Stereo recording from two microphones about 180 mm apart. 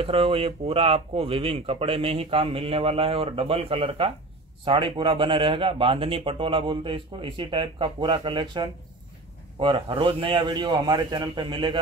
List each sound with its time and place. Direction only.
0.0 s a man's voice: 30° right (ahead or behind)